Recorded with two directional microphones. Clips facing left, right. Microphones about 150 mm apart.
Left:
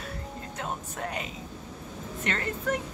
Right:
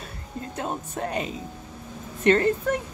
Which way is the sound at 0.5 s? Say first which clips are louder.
Right 5 dB; 30° right (ahead or behind).